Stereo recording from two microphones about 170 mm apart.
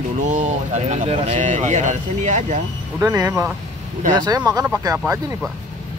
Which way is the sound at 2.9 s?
20° right (ahead or behind).